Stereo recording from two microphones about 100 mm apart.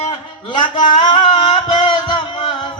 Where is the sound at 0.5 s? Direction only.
55° left (ahead or behind).